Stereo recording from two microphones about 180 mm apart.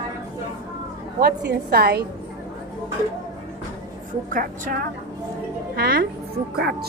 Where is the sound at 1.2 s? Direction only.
60° right (ahead or behind).